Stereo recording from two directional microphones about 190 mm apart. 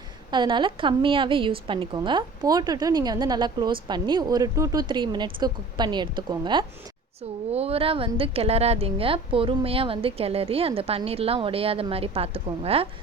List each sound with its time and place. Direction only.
0.3 s a woman's voice: 25° right (ahead or behind)